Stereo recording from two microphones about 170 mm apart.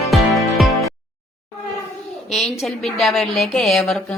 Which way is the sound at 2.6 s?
Centre (ahead or behind).